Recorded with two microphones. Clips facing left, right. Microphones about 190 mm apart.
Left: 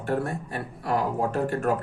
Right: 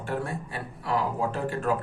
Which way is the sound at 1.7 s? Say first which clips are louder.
Even; 65° left (ahead or behind).